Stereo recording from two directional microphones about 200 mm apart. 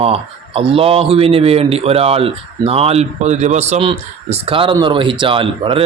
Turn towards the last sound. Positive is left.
turn(degrees=-25)  # may be behind; listen again after turning